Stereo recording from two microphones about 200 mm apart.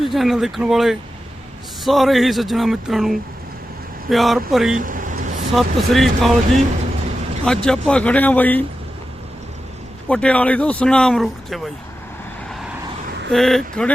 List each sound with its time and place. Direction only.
0.0 s speech: centre (ahead or behind)
4.8 s vehicle: 45° right (ahead or behind)
5.5 s speech: centre (ahead or behind)
10.1 s speech: 5° left (ahead or behind)
13.3 s speech: centre (ahead or behind)